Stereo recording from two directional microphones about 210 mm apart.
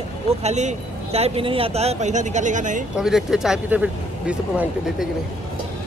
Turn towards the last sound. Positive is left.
turn(degrees=-5)  # may be behind; listen again after turning